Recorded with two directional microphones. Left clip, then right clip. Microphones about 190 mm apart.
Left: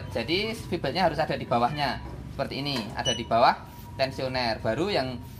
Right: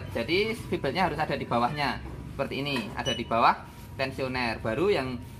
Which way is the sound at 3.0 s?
35° left (ahead or behind).